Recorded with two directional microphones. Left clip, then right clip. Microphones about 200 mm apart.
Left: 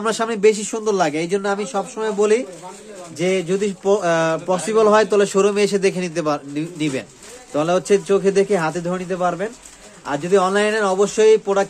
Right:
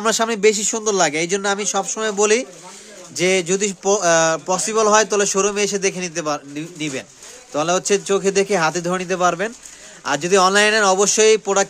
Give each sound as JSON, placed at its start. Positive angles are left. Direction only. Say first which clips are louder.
{"t": 0.0, "sound": "speech", "louder": "even", "side_deg": -35}
{"t": 3.8, "sound": "speech", "louder": "right 2 dB", "side_deg": -20}
{"t": 7.5, "sound": "speech", "louder": "left 1 dB", "side_deg": -15}